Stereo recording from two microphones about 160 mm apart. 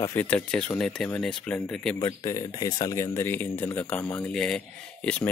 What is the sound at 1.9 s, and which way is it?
Speech, 25° left (ahead or behind).